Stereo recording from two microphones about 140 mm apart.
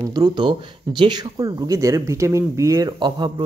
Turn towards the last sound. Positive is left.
turn(degrees=-35)  # may be behind; listen again after turning